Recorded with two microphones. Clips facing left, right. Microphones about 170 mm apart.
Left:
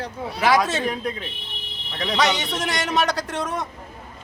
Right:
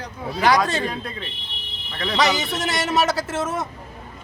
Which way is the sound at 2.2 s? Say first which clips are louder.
Right 1 dB; centre (ahead or behind).